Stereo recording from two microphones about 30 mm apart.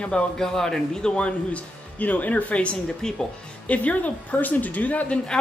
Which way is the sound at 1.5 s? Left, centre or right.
Left.